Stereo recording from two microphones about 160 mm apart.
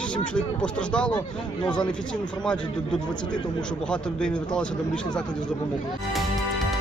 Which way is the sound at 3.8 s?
5° left (ahead or behind).